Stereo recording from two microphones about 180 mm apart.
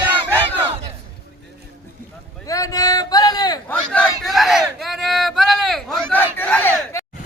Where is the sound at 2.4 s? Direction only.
20° left (ahead or behind).